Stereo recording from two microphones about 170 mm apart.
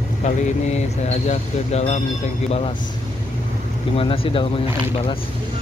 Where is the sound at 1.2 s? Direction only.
40° left (ahead or behind).